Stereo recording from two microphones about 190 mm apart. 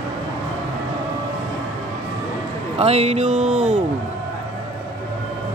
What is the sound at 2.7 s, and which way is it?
A man's voice, 30° right (ahead or behind).